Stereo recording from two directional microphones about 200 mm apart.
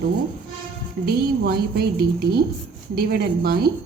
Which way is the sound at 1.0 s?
50° right (ahead or behind).